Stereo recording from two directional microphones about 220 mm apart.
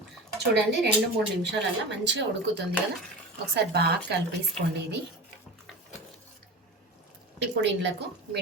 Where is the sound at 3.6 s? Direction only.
45° right (ahead or behind).